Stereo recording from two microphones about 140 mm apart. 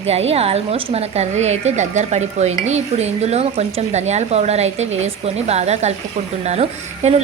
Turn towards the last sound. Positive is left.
turn(degrees=-50)  # may be behind; listen again after turning